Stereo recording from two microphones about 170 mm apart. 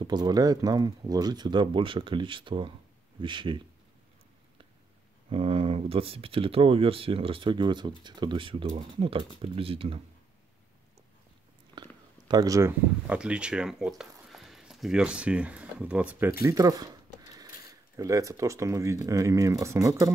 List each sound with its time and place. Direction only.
0.0 s speech: 25° right (ahead or behind)
5.3 s speech: 35° right (ahead or behind)
12.3 s speech: 20° right (ahead or behind)
13.0 s speech: 5° right (ahead or behind)
16.4 s speech: 20° right (ahead or behind)